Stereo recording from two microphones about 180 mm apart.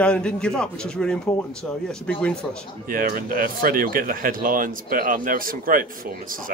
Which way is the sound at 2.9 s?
50° right (ahead or behind).